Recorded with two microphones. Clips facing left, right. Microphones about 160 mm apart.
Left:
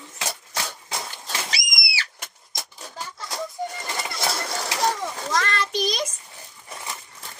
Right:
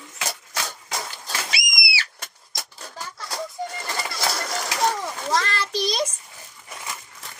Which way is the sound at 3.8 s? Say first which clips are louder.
Right 3 dB; 20° left (ahead or behind).